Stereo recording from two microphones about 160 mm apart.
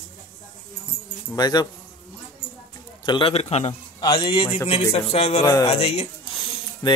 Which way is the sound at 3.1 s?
35° left (ahead or behind).